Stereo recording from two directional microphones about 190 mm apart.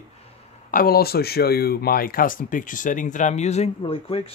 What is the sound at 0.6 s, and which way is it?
Speech, 50° left (ahead or behind).